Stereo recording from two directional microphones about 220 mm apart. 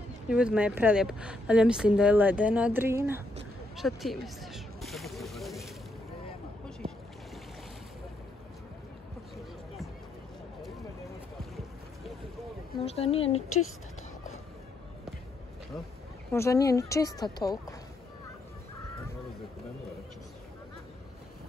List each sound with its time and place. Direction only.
0.3 s speech: 5° right (ahead or behind)
3.7 s a sound: centre (ahead or behind)
12.8 s speech: 25° left (ahead or behind)
16.3 s speech: 15° left (ahead or behind)